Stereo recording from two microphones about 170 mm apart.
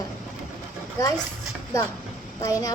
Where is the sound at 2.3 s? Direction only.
20° left (ahead or behind).